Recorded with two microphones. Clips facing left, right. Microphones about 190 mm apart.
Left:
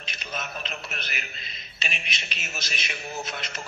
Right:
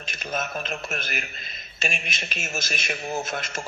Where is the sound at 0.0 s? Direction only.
50° right (ahead or behind).